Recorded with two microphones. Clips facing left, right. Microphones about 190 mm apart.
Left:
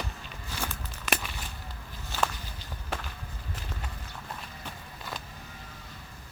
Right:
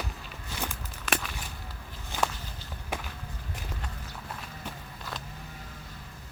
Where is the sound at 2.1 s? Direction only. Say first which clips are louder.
Even; 15° right (ahead or behind).